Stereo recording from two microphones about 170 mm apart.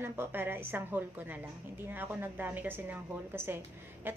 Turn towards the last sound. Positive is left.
turn(degrees=-10)  # may be behind; listen again after turning